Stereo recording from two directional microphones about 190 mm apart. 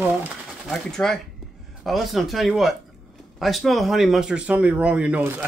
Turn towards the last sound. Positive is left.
turn(degrees=-5)  # may be behind; listen again after turning